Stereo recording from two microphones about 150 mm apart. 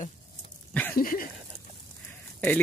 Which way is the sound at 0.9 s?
70° left (ahead or behind).